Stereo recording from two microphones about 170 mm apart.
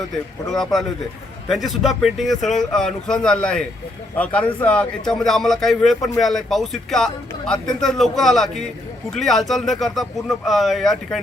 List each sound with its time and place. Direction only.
0.5 s speech: centre (ahead or behind)